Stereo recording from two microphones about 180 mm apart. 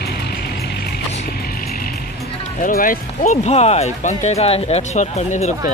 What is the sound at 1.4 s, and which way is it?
Vehicle, 55° left (ahead or behind).